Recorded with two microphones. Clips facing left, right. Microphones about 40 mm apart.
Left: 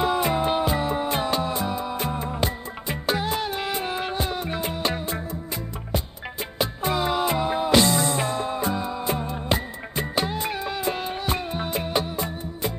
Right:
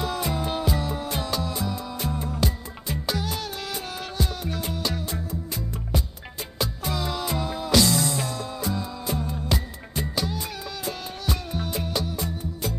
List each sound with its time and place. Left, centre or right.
0.0 s music: left
6.6 s music: left